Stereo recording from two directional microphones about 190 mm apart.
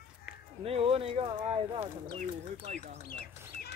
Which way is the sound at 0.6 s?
30° right (ahead or behind).